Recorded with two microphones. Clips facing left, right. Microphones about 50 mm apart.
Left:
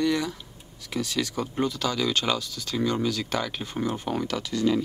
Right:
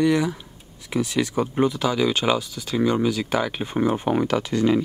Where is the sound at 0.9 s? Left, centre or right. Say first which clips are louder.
Right 5 dB; right.